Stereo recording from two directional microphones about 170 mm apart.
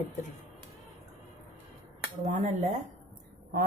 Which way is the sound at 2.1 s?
45° right (ahead or behind).